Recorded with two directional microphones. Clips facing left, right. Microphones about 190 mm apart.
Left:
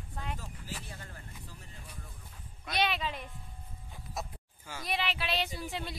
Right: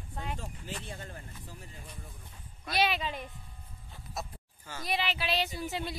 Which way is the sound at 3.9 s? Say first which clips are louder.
Even; 15° left (ahead or behind).